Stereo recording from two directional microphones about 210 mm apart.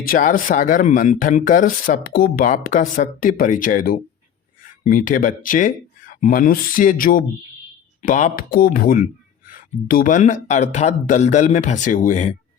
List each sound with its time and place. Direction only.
0.0 s speech: 40° left (ahead or behind)